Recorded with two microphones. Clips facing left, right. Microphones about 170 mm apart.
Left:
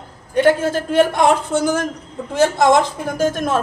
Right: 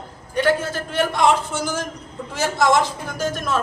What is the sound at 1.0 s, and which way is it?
A woman's voice, 50° left (ahead or behind).